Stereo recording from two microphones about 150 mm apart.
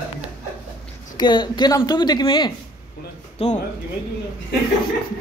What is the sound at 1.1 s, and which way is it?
Speech, 30° left (ahead or behind).